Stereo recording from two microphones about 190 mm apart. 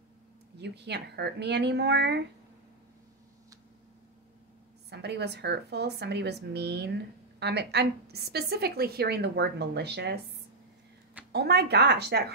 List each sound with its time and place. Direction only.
0.6 s a woman's voice: 65° right (ahead or behind)
4.8 s a woman's voice: 65° right (ahead or behind)
11.3 s a woman's voice: 60° right (ahead or behind)